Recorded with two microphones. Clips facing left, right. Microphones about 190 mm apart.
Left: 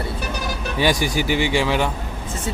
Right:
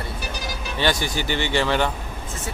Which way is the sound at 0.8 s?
10° left (ahead or behind).